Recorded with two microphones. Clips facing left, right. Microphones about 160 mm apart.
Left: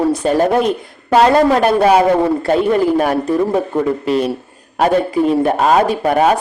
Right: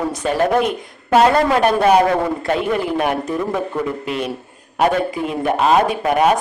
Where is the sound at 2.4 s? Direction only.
40° left (ahead or behind).